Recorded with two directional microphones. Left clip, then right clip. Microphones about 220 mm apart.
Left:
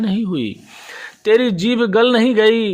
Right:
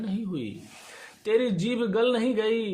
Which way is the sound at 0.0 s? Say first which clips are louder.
Left 12 dB; 45° left (ahead or behind).